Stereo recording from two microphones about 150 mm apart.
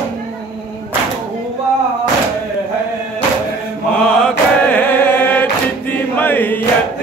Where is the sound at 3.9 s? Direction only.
5° left (ahead or behind).